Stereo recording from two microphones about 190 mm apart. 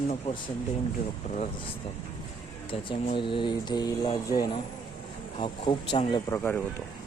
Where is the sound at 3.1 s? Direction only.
25° left (ahead or behind).